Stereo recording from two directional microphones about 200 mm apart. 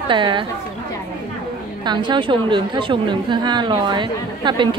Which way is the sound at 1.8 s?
20° right (ahead or behind).